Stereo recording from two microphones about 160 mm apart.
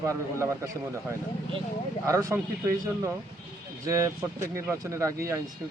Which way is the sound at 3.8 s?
20° right (ahead or behind).